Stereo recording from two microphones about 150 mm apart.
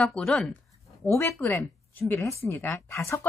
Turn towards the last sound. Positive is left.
turn(degrees=20)  # may be behind; listen again after turning